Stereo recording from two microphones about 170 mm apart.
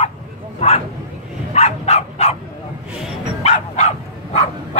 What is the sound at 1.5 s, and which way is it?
Dog, 40° left (ahead or behind).